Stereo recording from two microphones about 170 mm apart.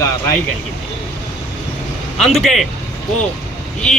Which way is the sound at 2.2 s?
Centre (ahead or behind).